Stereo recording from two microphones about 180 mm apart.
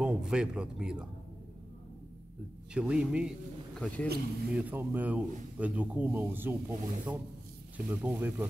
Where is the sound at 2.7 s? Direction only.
5° right (ahead or behind).